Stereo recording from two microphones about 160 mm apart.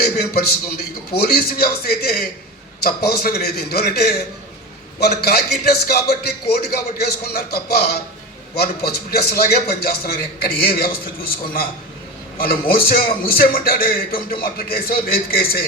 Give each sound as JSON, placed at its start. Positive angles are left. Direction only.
{"t": 0.0, "sound": "a man's voice", "side_deg": 75}
{"t": 12.4, "sound": "a man's voice", "side_deg": 70}